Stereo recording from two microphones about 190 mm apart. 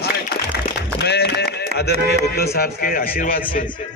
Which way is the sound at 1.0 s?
60° left (ahead or behind).